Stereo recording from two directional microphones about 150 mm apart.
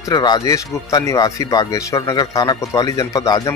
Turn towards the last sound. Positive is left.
turn(degrees=25)  # may be behind; listen again after turning